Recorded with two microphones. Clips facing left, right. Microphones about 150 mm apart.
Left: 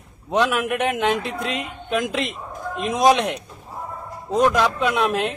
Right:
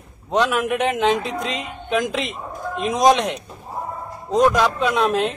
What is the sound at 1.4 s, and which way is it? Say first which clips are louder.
Speech: even; 60° left (ahead or behind).